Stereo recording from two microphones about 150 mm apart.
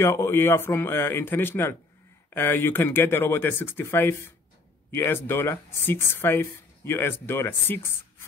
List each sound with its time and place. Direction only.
0.0 s speech: 15° left (ahead or behind)